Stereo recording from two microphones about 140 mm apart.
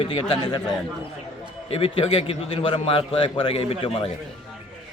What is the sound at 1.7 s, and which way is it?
A man's voice, 40° left (ahead or behind).